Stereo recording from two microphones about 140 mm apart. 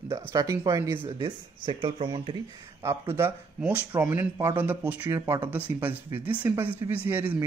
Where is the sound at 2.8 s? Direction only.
20° right (ahead or behind).